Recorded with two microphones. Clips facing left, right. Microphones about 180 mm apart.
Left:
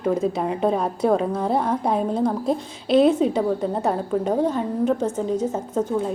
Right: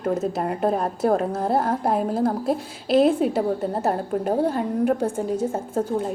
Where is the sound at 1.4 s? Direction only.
5° right (ahead or behind).